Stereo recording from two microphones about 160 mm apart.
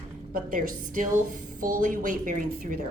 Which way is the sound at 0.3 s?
60° right (ahead or behind).